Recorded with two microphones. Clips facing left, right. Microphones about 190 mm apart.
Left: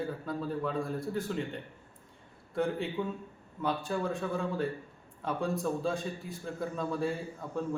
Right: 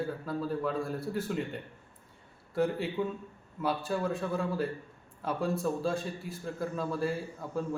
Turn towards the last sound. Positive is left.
turn(degrees=-5)  # may be behind; listen again after turning